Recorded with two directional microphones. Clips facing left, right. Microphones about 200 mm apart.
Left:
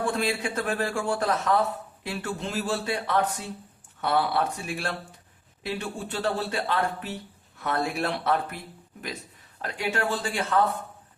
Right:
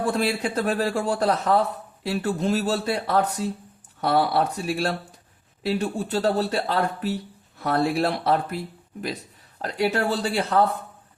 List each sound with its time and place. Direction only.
0.0 s a man's voice: 35° right (ahead or behind)